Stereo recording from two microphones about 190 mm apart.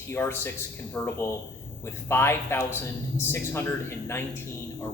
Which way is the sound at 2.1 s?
10° left (ahead or behind).